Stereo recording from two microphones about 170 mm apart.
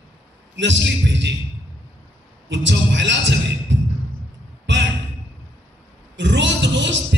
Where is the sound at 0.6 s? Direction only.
90° right.